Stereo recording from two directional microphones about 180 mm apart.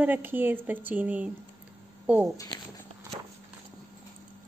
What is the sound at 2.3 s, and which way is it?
Speech, 20° left (ahead or behind).